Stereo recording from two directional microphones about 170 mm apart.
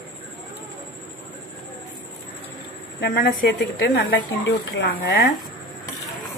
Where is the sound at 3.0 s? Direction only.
85° left.